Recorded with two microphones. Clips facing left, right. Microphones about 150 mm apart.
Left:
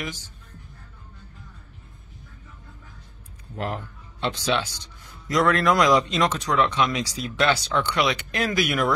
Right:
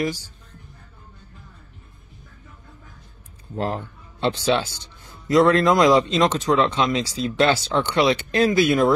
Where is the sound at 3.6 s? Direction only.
30° right (ahead or behind).